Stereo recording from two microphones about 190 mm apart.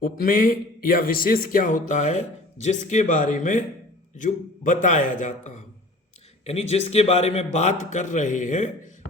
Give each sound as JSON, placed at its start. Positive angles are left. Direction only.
{"t": 0.0, "sound": "a man's voice", "side_deg": 50}